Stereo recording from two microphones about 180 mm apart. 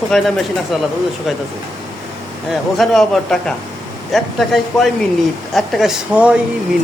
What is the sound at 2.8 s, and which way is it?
A man's voice, 5° left (ahead or behind).